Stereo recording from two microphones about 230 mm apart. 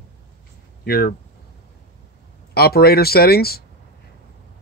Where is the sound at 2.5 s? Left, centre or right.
Left.